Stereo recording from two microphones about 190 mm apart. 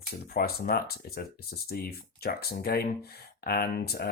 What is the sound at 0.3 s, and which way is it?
Speech, 55° left (ahead or behind).